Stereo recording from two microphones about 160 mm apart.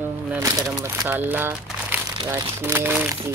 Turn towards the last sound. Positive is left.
turn(degrees=-10)  # may be behind; listen again after turning